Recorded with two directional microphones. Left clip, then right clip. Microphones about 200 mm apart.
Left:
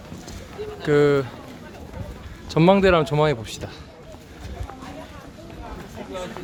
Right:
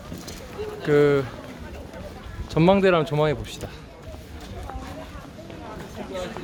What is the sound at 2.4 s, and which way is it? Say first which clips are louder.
A man's voice: left 2 dB; 20° left (ahead or behind).